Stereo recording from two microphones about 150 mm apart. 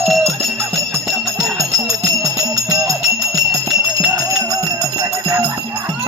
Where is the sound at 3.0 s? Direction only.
Centre (ahead or behind).